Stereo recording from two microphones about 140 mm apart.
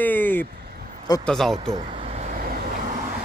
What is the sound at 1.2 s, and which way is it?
Speech, 5° left (ahead or behind).